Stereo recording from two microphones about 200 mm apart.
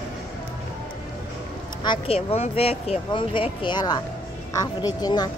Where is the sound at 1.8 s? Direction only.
30° left (ahead or behind).